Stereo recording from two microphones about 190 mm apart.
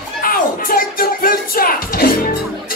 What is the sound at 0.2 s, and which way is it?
Music, 50° left (ahead or behind).